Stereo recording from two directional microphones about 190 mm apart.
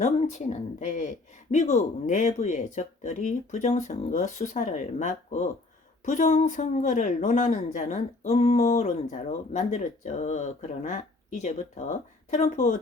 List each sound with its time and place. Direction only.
0.0 s speech: 40° left (ahead or behind)